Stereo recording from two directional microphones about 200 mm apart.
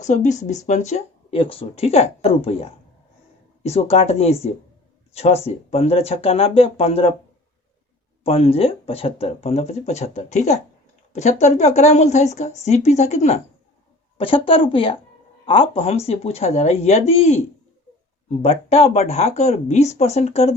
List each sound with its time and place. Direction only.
0.0 s speech: 35° left (ahead or behind)
8.2 s speech: 30° left (ahead or behind)
18.7 s speech: 30° left (ahead or behind)